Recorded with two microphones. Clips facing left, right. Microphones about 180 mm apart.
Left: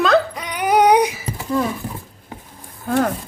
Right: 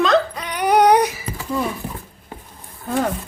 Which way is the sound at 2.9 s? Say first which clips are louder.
Left 3 dB; centre (ahead or behind).